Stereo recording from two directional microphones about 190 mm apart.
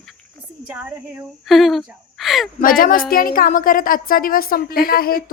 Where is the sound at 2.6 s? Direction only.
50° left (ahead or behind).